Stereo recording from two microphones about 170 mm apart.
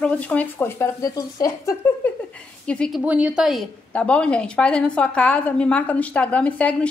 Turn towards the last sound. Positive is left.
turn(degrees=5)  # may be behind; listen again after turning